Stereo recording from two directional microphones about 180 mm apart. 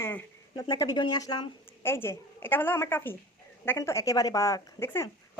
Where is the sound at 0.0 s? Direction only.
10° left (ahead or behind).